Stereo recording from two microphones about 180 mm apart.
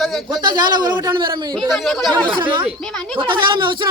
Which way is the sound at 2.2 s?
25° right (ahead or behind).